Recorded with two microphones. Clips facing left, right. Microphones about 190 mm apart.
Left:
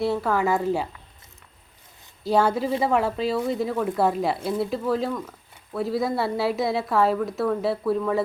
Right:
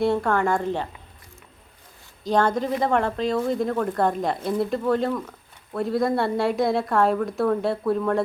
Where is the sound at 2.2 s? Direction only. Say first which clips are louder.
Even; 5° left (ahead or behind).